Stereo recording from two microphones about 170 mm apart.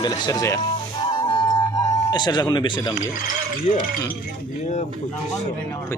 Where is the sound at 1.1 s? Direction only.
25° left (ahead or behind).